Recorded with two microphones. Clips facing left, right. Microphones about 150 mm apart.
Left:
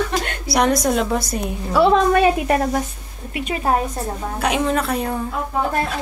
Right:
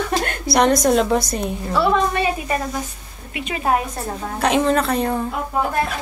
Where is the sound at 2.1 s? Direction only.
60° left (ahead or behind).